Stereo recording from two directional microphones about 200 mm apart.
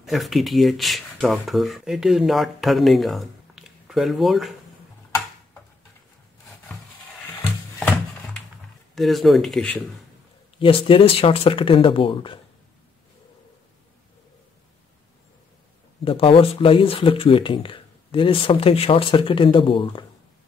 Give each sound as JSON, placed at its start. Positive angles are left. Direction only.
{"t": 0.0, "sound": "speech", "side_deg": 0}
{"t": 8.9, "sound": "speech", "side_deg": 0}
{"t": 10.6, "sound": "speech", "side_deg": 25}
{"t": 16.0, "sound": "speech", "side_deg": 25}